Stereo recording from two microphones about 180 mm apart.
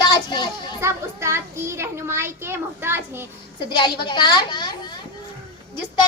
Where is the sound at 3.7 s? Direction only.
25° left (ahead or behind).